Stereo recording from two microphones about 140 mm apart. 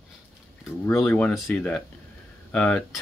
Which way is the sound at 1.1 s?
5° left (ahead or behind).